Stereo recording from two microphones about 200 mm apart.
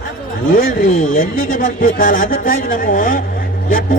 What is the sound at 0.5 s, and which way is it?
A man's voice, 45° left (ahead or behind).